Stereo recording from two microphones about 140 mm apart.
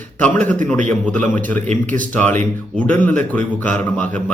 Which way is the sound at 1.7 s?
70° right (ahead or behind).